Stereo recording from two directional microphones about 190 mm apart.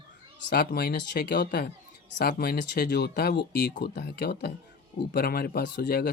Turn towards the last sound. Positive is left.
turn(degrees=60)  # may be behind; listen again after turning